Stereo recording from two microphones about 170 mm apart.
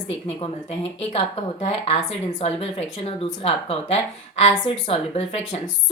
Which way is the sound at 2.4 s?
35° left (ahead or behind).